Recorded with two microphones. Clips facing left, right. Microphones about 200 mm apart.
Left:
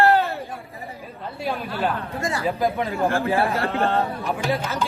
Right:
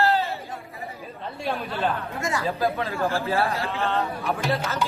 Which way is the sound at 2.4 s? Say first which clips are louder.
Left 3 dB; 15° left (ahead or behind).